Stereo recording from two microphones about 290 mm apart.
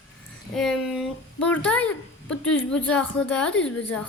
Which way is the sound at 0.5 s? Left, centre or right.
Centre.